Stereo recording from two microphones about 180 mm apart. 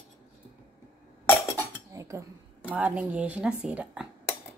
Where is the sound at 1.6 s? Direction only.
15° right (ahead or behind).